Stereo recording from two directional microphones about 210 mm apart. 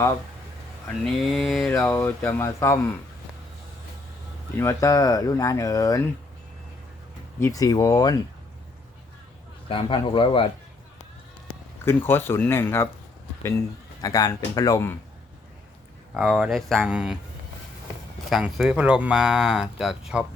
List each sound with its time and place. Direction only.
1.0 s speech: centre (ahead or behind)
1.7 s speech: 15° left (ahead or behind)
4.5 s speech: 15° left (ahead or behind)
7.3 s speech: 15° left (ahead or behind)
9.6 s speech: 25° left (ahead or behind)
11.9 s speech: 10° left (ahead or behind)
14.0 s speech: 15° left (ahead or behind)
16.1 s speech: 5° right (ahead or behind)
18.3 s speech: centre (ahead or behind)